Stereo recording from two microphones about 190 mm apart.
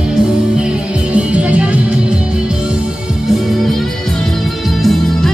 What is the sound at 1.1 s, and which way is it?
Music, 5° right (ahead or behind).